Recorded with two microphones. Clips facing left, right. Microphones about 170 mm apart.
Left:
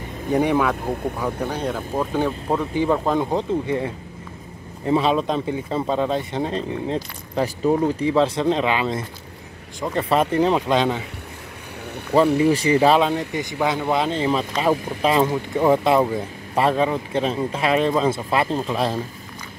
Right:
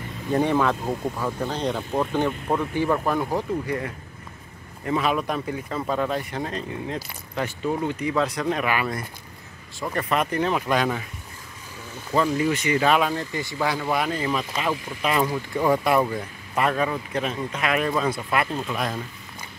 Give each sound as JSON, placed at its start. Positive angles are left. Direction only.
{"t": 0.3, "sound": "speech", "side_deg": 15}
{"t": 2.4, "sound": "speech", "side_deg": 20}
{"t": 12.4, "sound": "speech", "side_deg": 30}
{"t": 13.3, "sound": "speech", "side_deg": 20}